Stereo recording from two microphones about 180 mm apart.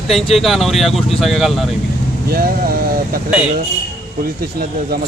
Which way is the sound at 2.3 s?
55° right (ahead or behind).